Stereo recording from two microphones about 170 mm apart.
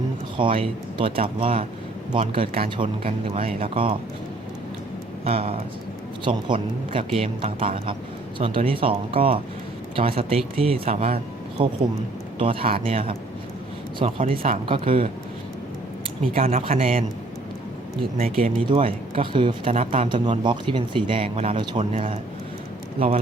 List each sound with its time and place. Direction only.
0.3 s speech: 30° right (ahead or behind)
5.2 s speech: 35° right (ahead or behind)
16.2 s speech: 35° right (ahead or behind)
18.2 s speech: 55° right (ahead or behind)
18.7 s speech: 35° right (ahead or behind)